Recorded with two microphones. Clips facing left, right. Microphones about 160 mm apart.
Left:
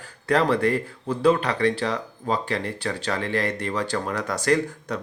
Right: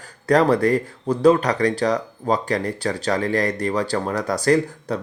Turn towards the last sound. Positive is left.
turn(degrees=-35)  # may be behind; listen again after turning